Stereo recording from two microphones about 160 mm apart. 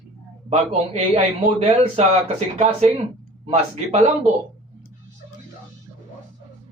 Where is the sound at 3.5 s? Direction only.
45° right (ahead or behind).